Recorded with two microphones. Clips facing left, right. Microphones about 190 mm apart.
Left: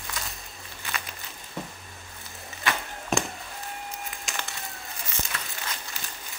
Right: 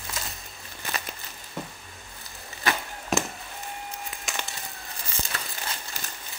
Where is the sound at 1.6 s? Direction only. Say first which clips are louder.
Even; centre (ahead or behind).